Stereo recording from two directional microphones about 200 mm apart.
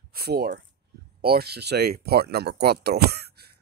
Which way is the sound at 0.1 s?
50° right (ahead or behind).